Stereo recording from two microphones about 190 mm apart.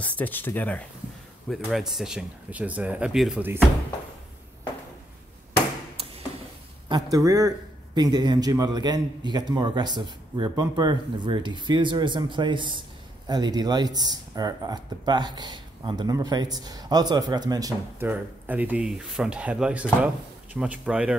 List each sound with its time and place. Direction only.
0.0 s speech: 10° left (ahead or behind)
6.9 s speech: 20° right (ahead or behind)